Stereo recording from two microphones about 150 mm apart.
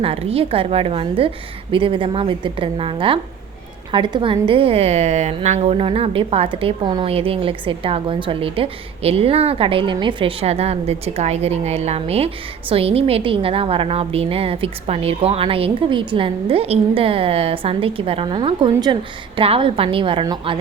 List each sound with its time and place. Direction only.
0.0 s a woman's voice: 40° right (ahead or behind)